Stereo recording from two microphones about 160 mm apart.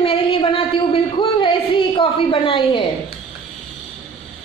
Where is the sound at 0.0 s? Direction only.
35° left (ahead or behind).